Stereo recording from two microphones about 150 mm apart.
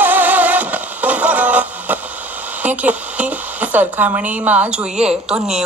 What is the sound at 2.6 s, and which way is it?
Speech, 10° right (ahead or behind).